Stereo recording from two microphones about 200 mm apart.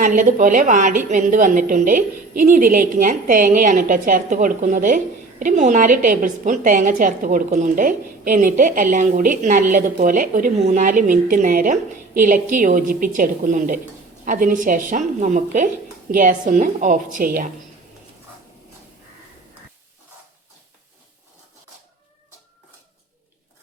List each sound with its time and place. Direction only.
0.0 s a woman's voice: 40° right (ahead or behind)